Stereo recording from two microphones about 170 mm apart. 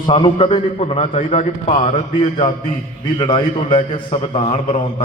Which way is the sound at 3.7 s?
45° left (ahead or behind).